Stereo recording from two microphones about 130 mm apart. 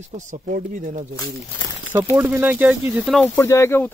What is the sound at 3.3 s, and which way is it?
Speech, 20° left (ahead or behind).